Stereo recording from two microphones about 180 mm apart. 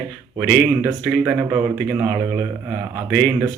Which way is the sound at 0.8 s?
10° right (ahead or behind).